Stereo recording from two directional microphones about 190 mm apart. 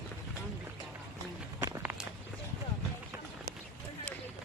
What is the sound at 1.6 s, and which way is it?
Walk, 10° right (ahead or behind).